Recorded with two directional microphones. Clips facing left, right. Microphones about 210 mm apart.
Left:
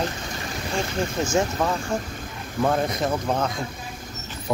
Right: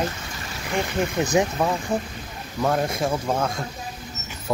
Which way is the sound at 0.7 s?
20° right (ahead or behind).